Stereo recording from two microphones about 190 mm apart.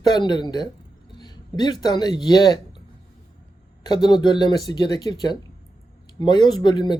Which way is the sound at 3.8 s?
20° left (ahead or behind).